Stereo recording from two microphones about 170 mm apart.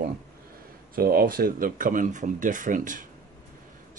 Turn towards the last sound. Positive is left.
turn(degrees=-50)  # may be behind; listen again after turning